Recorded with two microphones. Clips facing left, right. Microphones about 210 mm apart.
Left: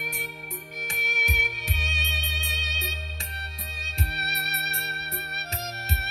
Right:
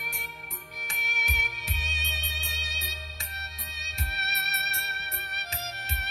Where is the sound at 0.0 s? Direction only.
20° left (ahead or behind).